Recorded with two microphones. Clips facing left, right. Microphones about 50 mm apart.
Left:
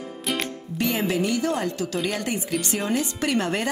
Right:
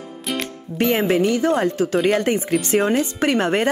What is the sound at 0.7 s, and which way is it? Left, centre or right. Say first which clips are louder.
Speech: right 6 dB; right.